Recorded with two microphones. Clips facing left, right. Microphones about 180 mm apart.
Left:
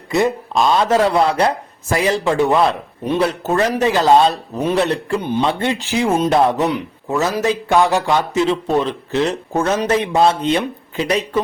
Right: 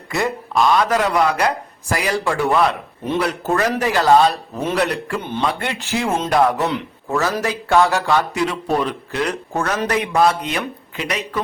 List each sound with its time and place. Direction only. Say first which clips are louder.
0.1 s speech: left 5 dB; 20° left (ahead or behind)
5.2 s speech: left 4 dB; 15° left (ahead or behind); by 11.2 s 30° left (ahead or behind)